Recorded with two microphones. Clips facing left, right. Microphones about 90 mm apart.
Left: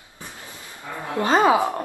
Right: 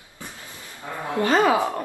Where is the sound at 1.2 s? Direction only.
20° left (ahead or behind).